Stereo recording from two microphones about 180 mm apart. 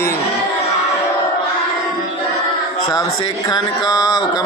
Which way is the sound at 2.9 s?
20° left (ahead or behind).